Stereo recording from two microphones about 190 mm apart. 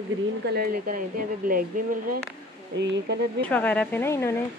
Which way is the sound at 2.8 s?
65° right (ahead or behind).